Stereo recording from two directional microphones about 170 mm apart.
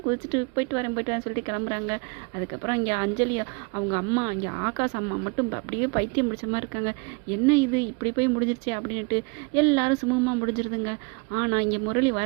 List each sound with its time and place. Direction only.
0.1 s speech: 25° right (ahead or behind)